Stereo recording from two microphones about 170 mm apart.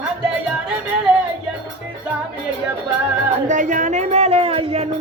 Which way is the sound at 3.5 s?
50° right (ahead or behind).